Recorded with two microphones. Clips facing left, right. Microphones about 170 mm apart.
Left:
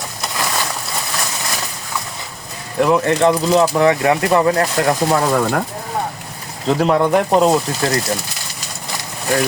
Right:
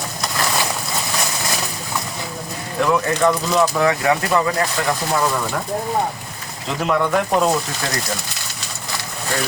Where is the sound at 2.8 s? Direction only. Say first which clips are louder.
Left 4 dB; 25° left (ahead or behind).